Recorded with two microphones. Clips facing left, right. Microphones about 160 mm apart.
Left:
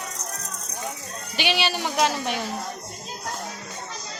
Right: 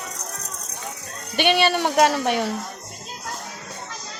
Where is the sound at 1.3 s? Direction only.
55° right (ahead or behind).